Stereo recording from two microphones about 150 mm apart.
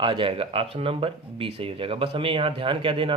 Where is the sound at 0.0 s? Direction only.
35° right (ahead or behind).